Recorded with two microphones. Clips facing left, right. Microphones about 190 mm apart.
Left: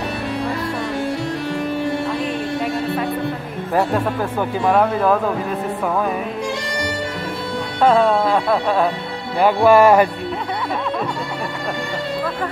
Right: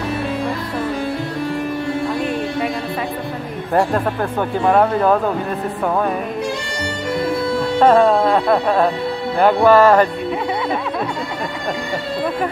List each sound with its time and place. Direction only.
3.7 s speech: 5° left (ahead or behind)
7.8 s speech: centre (ahead or behind)